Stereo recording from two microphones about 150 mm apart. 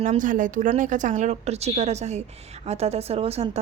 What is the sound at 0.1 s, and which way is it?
A woman's voice, 60° right (ahead or behind).